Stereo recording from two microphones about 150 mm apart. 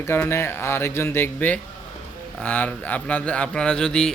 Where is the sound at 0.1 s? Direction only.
15° left (ahead or behind).